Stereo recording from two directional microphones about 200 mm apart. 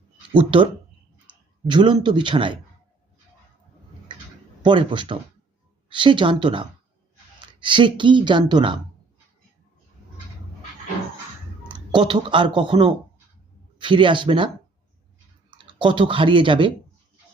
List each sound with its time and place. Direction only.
0.3 s speech: 25° right (ahead or behind)
4.6 s speech: 25° right (ahead or behind)
11.7 s speech: 25° right (ahead or behind)